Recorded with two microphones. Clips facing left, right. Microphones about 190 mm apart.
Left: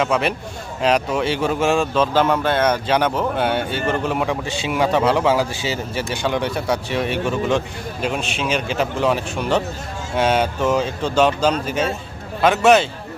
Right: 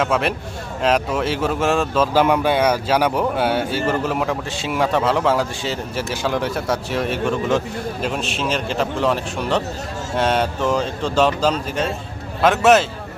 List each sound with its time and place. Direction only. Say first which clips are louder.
0.0 s speech: even; centre (ahead or behind)